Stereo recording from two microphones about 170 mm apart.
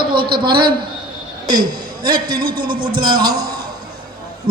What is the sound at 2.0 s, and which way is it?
A man's voice, 25° right (ahead or behind).